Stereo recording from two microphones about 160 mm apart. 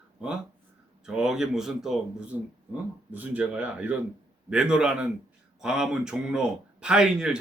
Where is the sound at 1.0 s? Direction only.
5° right (ahead or behind).